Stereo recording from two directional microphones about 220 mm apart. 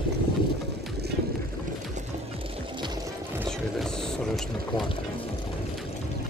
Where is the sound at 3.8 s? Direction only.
Centre (ahead or behind).